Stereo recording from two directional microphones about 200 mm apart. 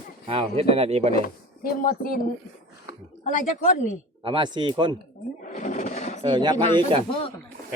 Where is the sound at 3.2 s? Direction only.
40° left (ahead or behind).